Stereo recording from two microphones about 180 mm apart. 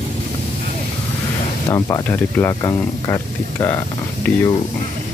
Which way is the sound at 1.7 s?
15° left (ahead or behind).